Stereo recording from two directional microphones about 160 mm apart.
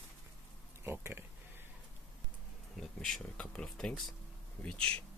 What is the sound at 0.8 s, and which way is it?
Speech, 15° right (ahead or behind).